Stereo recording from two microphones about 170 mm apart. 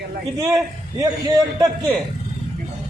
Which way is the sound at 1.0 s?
20° right (ahead or behind).